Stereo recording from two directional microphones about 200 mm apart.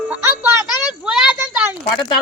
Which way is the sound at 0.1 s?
10° right (ahead or behind).